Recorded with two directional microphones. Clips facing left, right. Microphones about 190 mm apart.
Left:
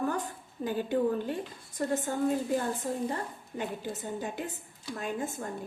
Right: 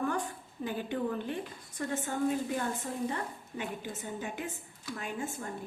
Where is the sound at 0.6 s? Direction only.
40° left (ahead or behind).